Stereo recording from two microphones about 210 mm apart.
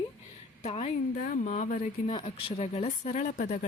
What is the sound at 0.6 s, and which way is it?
Speech, 35° left (ahead or behind).